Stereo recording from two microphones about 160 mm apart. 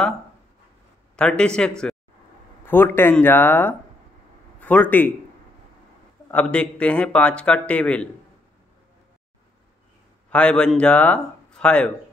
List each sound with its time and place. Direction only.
1.1 s a man's voice: 5° left (ahead or behind)
6.3 s speech: 5° left (ahead or behind)
10.3 s speech: 5° left (ahead or behind)